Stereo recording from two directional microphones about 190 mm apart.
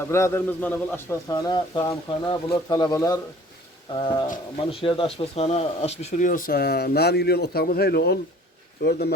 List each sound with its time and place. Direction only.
0.0 s a man's voice: 15° left (ahead or behind); by 9.1 s 60° left (ahead or behind)